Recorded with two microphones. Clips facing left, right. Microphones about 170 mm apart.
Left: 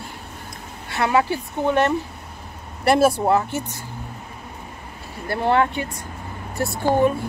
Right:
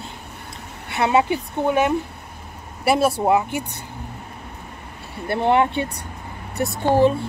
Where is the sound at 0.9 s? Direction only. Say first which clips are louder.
Right 1 dB; 20° right (ahead or behind).